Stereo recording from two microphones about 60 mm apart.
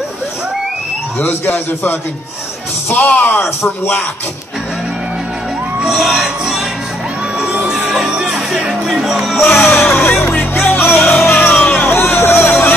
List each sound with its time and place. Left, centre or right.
1.2 s speech: left
5.8 s music: centre
9.4 s music: left
11.5 s hubbub: left